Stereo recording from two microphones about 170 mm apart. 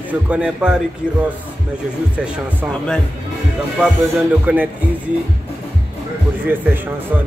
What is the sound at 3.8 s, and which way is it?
Speech, 5° right (ahead or behind).